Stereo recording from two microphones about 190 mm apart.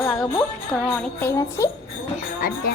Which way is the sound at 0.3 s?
10° left (ahead or behind).